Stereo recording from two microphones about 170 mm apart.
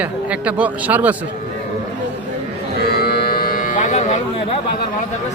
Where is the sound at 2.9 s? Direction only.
65° left (ahead or behind); by 4.2 s 45° left (ahead or behind).